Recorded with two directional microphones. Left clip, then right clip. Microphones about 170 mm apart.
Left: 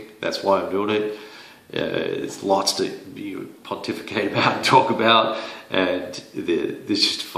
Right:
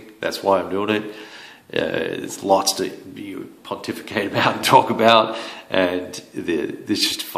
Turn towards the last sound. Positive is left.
turn(degrees=-45)  # may be behind; listen again after turning